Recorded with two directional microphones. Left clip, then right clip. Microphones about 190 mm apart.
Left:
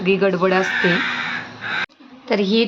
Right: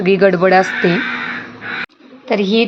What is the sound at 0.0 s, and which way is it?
Speech, 25° right (ahead or behind).